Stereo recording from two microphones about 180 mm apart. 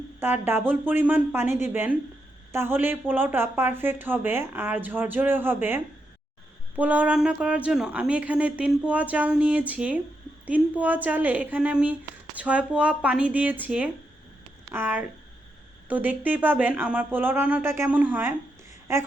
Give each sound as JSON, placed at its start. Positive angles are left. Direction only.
{"t": 0.2, "sound": "speech", "side_deg": -10}
{"t": 6.7, "sound": "speech", "side_deg": -10}